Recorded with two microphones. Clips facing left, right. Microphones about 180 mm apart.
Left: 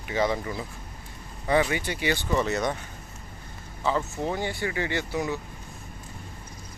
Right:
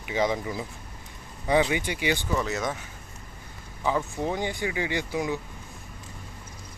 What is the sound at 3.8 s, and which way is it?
Speech, 15° right (ahead or behind).